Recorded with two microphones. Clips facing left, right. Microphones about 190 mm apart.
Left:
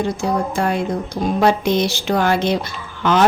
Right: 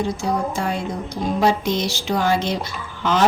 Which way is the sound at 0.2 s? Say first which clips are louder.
Left 3 dB; 60° left (ahead or behind).